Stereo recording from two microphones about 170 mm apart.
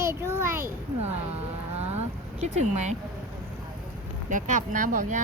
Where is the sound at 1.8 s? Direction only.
40° right (ahead or behind).